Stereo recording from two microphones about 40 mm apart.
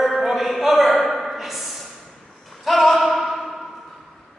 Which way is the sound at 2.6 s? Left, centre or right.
Centre.